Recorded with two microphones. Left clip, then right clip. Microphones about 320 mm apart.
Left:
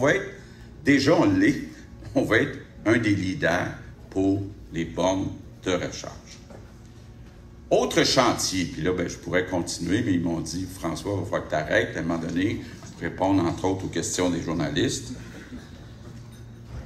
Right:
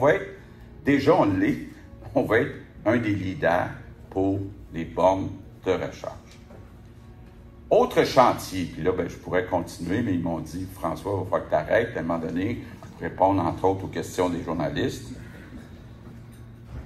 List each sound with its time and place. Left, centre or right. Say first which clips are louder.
0.8 s speech: even; centre
7.7 s speech: right 2 dB; centre